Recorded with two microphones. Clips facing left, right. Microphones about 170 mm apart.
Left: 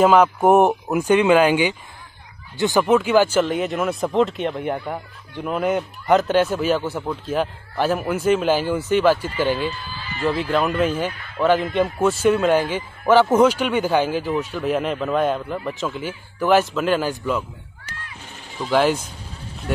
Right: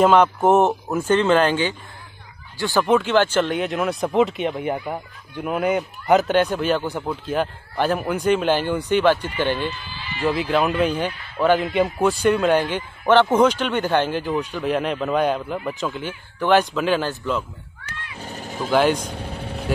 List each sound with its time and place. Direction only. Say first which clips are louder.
0.0 s speech: left 1 dB; 5° left (ahead or behind); by 2.8 s 20° left (ahead or behind)
2.8 s speech: left 1 dB; 5° left (ahead or behind)
18.2 s vehicle: right 8 dB; 40° right (ahead or behind)
18.7 s speech: even; centre (ahead or behind)
19.0 s vehicle: right 8 dB; 65° right (ahead or behind)